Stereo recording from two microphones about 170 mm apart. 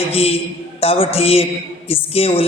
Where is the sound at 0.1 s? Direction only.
35° left (ahead or behind).